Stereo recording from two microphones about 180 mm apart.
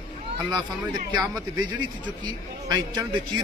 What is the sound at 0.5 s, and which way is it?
Speech, 25° right (ahead or behind).